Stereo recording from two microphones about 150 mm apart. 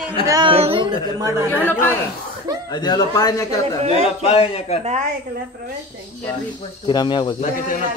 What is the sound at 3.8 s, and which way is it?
Speech, 45° right (ahead or behind).